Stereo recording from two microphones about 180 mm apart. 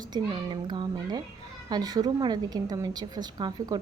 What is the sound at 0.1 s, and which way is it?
A woman's voice, 25° right (ahead or behind).